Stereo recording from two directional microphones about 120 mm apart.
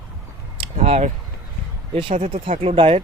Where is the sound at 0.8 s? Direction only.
65° right (ahead or behind).